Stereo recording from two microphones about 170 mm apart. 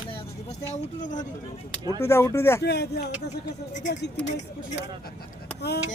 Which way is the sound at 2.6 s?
75° left (ahead or behind).